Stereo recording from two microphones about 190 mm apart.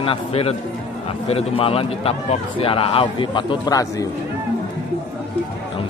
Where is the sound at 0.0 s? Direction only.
30° left (ahead or behind).